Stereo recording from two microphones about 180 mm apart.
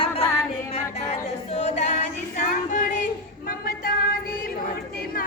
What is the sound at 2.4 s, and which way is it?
Music, 45° left (ahead or behind).